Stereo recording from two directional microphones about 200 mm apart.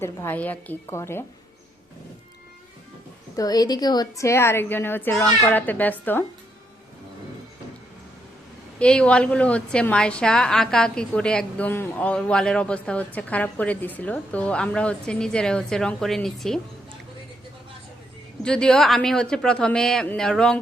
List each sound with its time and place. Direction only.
0.0 s a woman's voice: 10° left (ahead or behind)
3.3 s a woman's voice: 20° left (ahead or behind)
8.8 s a woman's voice: 5° left (ahead or behind)
18.4 s a woman's voice: 5° left (ahead or behind)